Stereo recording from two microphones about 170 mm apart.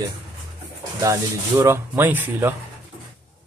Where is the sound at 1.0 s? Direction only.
15° right (ahead or behind).